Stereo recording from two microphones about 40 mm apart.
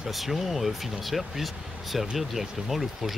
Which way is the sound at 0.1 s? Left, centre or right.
Centre.